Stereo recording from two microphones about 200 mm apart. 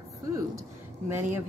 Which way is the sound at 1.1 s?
10° right (ahead or behind).